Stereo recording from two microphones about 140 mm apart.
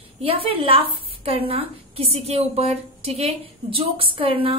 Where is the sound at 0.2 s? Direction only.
40° right (ahead or behind).